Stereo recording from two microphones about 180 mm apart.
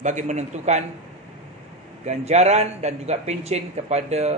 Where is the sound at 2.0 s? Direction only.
40° right (ahead or behind).